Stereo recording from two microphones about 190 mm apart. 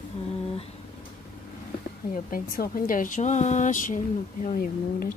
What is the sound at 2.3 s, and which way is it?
Speech, 45° left (ahead or behind).